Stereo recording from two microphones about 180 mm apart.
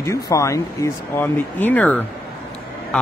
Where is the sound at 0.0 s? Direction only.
15° left (ahead or behind).